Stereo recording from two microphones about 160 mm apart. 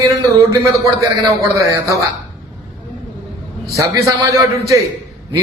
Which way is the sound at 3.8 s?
20° right (ahead or behind).